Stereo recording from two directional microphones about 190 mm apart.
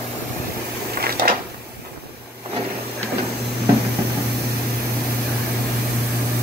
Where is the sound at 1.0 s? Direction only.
55° right (ahead or behind).